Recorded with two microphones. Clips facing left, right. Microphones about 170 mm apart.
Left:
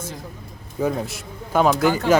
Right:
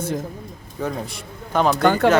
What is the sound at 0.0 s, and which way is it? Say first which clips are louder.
Speech: right 9 dB; 60° right (ahead or behind).